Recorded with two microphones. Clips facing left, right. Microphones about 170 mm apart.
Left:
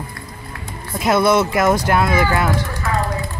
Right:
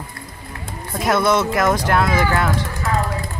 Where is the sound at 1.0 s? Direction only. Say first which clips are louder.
Left 2 dB; 10° left (ahead or behind).